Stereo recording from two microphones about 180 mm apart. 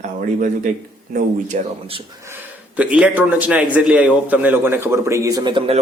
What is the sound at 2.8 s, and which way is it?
A man's voice, 5° right (ahead or behind).